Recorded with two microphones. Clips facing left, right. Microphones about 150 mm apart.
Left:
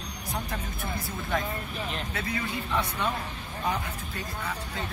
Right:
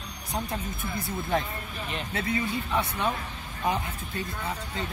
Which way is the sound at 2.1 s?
25° right (ahead or behind).